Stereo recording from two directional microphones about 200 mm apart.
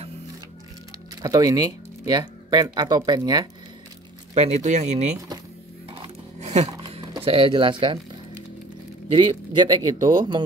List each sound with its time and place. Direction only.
1.2 s speech: 20° right (ahead or behind)
4.3 s speech: 30° right (ahead or behind)
5.9 s a sound: 20° right (ahead or behind)
6.4 s a sound: 35° right (ahead or behind)
6.7 s speech: 20° right (ahead or behind)
9.1 s speech: 20° right (ahead or behind)